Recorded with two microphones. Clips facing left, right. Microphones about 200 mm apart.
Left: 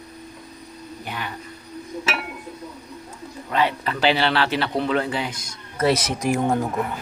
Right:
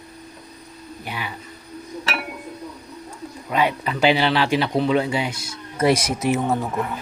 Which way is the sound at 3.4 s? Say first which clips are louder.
Right 1 dB; 10° right (ahead or behind).